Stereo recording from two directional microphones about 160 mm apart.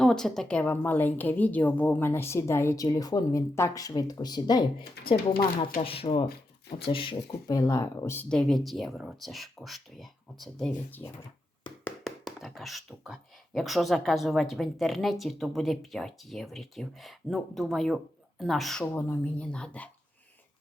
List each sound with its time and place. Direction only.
0.0 s a woman's voice: 5° left (ahead or behind); by 4.6 s 25° left (ahead or behind)
5.0 s speech: 90° left
5.8 s speech: 35° left (ahead or behind); by 11.1 s 10° left (ahead or behind)
12.0 s speech: centre (ahead or behind)
18.9 s a woman's voice: 15° left (ahead or behind)